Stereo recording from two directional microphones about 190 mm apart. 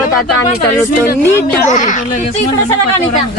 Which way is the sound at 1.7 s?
40° left (ahead or behind).